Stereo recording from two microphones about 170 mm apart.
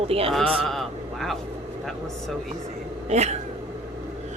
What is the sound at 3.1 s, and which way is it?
Speech, 40° right (ahead or behind).